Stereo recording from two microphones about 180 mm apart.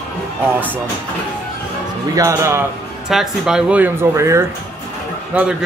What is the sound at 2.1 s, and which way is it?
Speech, 15° right (ahead or behind).